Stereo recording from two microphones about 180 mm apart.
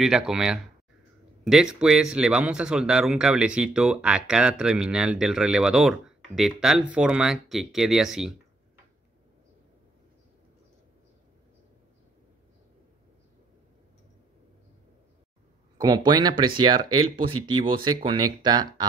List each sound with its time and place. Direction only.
0.0 s speech: 5° right (ahead or behind)
15.8 s speech: 20° right (ahead or behind)